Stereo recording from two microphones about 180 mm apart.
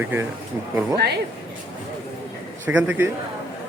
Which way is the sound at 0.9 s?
65° right (ahead or behind).